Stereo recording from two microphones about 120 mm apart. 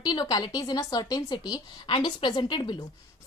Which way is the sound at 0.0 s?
35° left (ahead or behind).